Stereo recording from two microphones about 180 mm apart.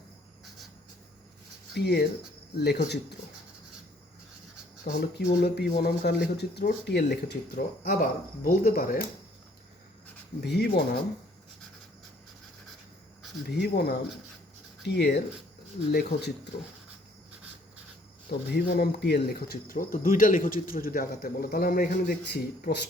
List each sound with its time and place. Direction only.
0.4 s writing: centre (ahead or behind)
1.7 s speech: 65° left (ahead or behind)
4.9 s speech: 60° left (ahead or behind)
10.4 s speech: 70° left (ahead or behind)
13.5 s speech: 65° left (ahead or behind)
18.3 s speech: 65° left (ahead or behind)